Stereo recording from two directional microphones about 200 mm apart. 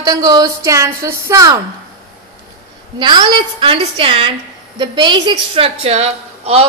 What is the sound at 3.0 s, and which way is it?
A woman's voice, 20° right (ahead or behind).